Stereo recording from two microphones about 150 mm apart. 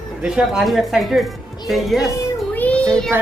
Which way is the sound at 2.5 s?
10° left (ahead or behind).